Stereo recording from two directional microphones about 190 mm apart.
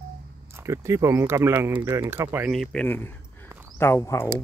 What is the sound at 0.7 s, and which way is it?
Speech, 15° right (ahead or behind).